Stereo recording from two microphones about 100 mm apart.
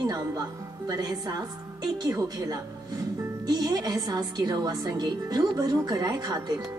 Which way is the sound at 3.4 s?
45° right (ahead or behind).